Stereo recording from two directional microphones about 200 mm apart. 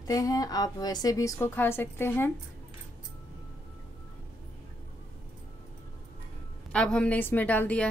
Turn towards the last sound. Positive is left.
turn(degrees=5)  # may be behind; listen again after turning